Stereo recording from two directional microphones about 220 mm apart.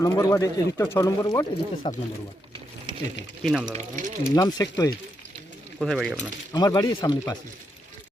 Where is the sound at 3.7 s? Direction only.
35° right (ahead or behind).